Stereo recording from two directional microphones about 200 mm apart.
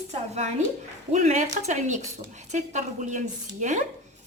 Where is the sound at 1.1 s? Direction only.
35° right (ahead or behind).